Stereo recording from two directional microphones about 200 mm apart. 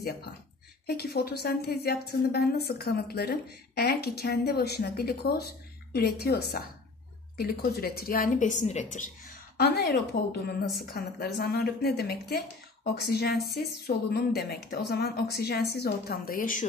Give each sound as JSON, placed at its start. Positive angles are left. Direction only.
{"t": 0.8, "sound": "a woman's voice", "side_deg": 50}
{"t": 9.6, "sound": "a woman's voice", "side_deg": 55}
{"t": 13.4, "sound": "speech", "side_deg": 0}
{"t": 13.8, "sound": "a woman's voice", "side_deg": 50}